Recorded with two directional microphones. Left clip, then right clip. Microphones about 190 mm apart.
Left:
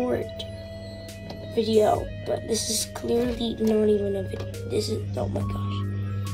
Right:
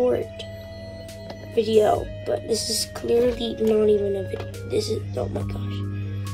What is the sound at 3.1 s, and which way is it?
Speech, 5° right (ahead or behind).